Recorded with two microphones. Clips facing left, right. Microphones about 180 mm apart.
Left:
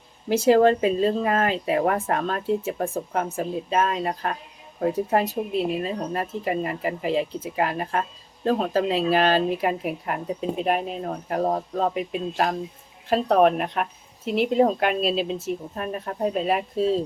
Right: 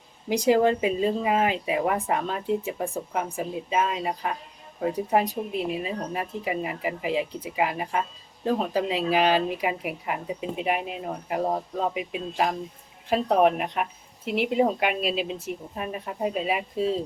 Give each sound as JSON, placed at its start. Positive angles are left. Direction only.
{"t": 0.3, "sound": "speech", "side_deg": -15}